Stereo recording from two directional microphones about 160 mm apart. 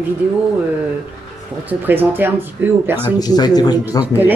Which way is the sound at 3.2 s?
25° left (ahead or behind).